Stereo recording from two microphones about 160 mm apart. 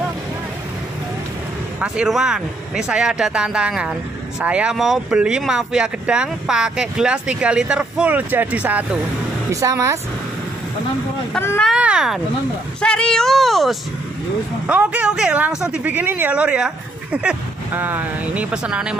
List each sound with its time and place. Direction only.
1.8 s speech: 5° right (ahead or behind)
9.5 s speech: 20° right (ahead or behind)
11.3 s speech: 10° left (ahead or behind)
11.7 s speech: 5° right (ahead or behind)
12.8 s speech: 5° left (ahead or behind)